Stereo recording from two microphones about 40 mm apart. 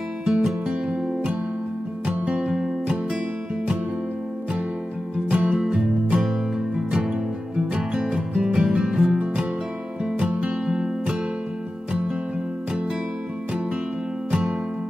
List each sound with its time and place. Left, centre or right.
0.2 s music: centre
2.0 s music: right
2.5 s music: centre
5.3 s music: right
6.9 s music: right
10.3 s music: right